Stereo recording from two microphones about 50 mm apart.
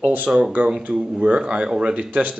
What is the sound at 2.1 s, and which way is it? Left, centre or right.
Speech, right.